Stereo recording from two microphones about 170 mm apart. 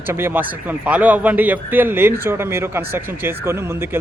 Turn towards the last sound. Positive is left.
turn(degrees=-15)  # may be behind; listen again after turning